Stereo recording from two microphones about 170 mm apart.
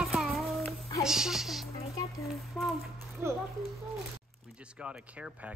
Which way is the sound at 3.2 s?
15° right (ahead or behind).